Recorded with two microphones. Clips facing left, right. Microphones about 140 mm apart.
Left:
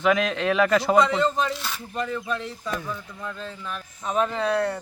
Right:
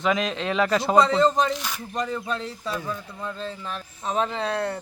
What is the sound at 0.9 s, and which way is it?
Speech, 35° right (ahead or behind).